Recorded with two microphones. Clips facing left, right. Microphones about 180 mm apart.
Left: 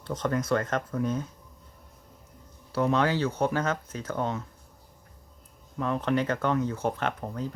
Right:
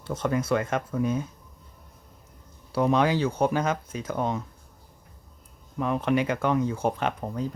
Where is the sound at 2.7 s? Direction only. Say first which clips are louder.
Right 2 dB; 15° right (ahead or behind).